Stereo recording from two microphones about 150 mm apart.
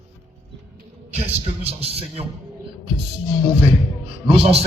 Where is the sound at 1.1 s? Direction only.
45° right (ahead or behind).